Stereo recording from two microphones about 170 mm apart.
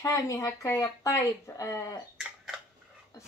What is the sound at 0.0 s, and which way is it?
Speech, 20° left (ahead or behind).